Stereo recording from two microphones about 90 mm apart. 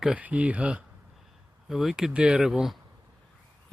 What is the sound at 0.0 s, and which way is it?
Speech, 15° right (ahead or behind).